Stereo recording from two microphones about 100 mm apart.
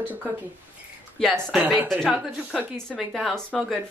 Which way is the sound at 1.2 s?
Centre (ahead or behind).